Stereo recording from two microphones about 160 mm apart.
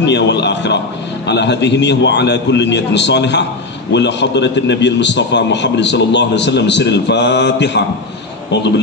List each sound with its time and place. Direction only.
0.0 s a man's voice: 90° left